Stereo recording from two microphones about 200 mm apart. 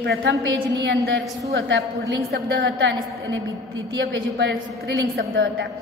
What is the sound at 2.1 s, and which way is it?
A woman's voice, 55° right (ahead or behind).